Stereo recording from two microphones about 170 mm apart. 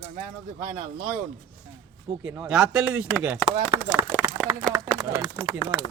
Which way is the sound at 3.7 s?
25° right (ahead or behind).